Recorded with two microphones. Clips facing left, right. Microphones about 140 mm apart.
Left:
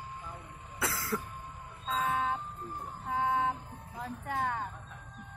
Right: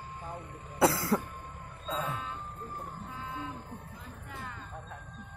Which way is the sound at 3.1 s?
90° left.